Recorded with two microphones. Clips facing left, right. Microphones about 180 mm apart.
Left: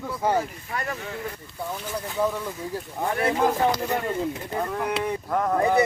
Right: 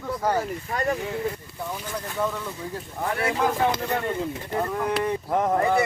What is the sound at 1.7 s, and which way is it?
Speech, 5° left (ahead or behind).